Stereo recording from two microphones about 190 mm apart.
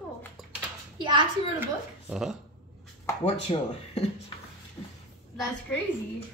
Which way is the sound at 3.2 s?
30° left (ahead or behind).